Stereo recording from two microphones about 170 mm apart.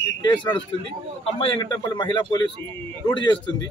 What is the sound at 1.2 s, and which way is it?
A man's voice, 30° left (ahead or behind).